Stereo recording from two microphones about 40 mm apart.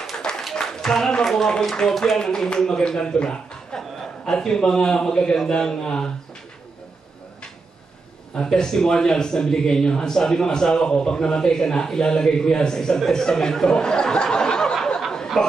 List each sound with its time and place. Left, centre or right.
0.1 s a sound: centre
1.6 s speech: centre
8.4 s speech: centre